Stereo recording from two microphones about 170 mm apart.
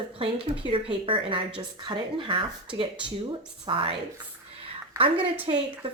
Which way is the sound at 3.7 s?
30° right (ahead or behind).